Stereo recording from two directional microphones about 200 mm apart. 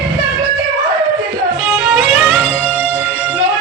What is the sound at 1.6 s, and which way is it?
Music, 5° right (ahead or behind).